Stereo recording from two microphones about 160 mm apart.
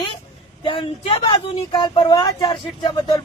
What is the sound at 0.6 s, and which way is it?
Speech, 35° left (ahead or behind).